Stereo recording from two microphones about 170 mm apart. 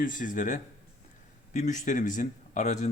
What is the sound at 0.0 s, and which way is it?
Speech, 50° left (ahead or behind).